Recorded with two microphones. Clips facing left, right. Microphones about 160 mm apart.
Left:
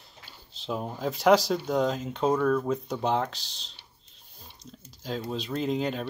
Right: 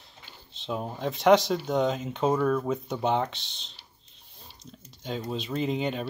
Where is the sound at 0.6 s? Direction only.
Centre (ahead or behind).